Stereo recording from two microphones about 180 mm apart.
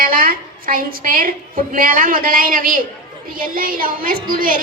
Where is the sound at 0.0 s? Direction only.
55° right (ahead or behind).